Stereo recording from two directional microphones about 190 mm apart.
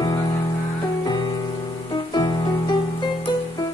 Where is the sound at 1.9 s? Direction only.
20° left (ahead or behind).